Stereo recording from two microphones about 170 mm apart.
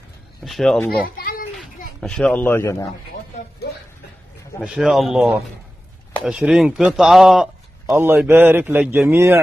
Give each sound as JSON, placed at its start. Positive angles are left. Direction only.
{"t": 0.4, "sound": "speech", "side_deg": 0}
{"t": 1.0, "sound": "a child's voice", "side_deg": 60}
{"t": 2.0, "sound": "a man's voice", "side_deg": 5}
{"t": 4.6, "sound": "a man's voice", "side_deg": 0}
{"t": 7.9, "sound": "speech", "side_deg": -15}